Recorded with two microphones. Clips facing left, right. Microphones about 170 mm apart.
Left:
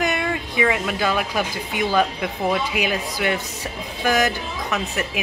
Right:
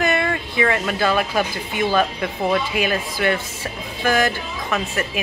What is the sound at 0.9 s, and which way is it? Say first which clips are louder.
Speech: right 3 dB; 15° left (ahead or behind).